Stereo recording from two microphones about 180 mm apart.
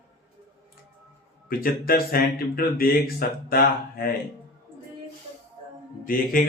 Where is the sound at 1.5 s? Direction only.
55° left (ahead or behind).